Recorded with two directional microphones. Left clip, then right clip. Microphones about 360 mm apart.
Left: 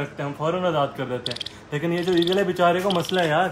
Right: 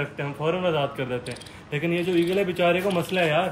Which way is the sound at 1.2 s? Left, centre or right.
Left.